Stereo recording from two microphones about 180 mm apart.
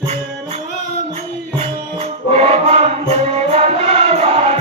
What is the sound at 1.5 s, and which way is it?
Music, 30° right (ahead or behind).